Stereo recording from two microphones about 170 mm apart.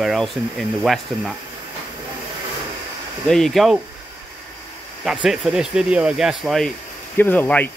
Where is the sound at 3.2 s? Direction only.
Centre (ahead or behind).